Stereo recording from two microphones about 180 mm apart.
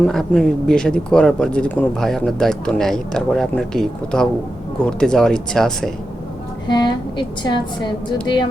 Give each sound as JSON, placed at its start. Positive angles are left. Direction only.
{"t": 0.0, "sound": "speech", "side_deg": 0}
{"t": 6.7, "sound": "a woman's voice", "side_deg": 25}